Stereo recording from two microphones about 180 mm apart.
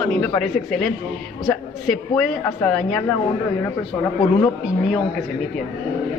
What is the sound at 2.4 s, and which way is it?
Speech, 5° left (ahead or behind).